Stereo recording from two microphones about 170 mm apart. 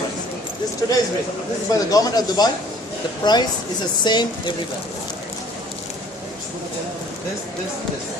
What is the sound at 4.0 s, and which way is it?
Speech, 25° left (ahead or behind).